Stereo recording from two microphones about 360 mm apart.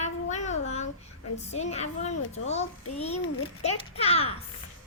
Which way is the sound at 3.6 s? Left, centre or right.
Centre.